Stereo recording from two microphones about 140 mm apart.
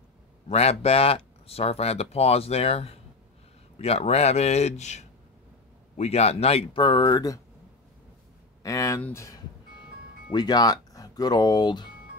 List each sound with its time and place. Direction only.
0.5 s speech: 50° left (ahead or behind); by 7.3 s 25° left (ahead or behind)
8.6 s a sound: 25° left (ahead or behind)
9.0 s speech: 20° left (ahead or behind)